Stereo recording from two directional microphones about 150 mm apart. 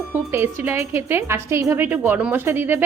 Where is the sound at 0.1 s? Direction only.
15° right (ahead or behind).